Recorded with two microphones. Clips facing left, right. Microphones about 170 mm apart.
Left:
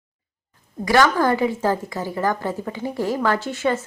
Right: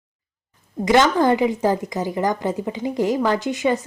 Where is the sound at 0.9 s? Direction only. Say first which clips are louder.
Right 2 dB; 20° right (ahead or behind).